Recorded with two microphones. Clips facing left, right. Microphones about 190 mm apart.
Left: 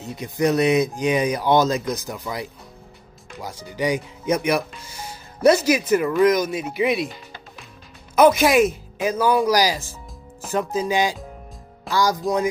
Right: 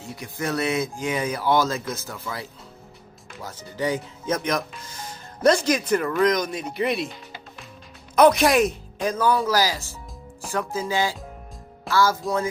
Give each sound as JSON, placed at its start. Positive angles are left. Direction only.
{"t": 0.0, "sound": "speech", "side_deg": 20}
{"t": 8.2, "sound": "speech", "side_deg": 0}